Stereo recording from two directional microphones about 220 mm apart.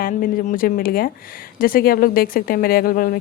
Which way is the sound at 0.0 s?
40° left (ahead or behind).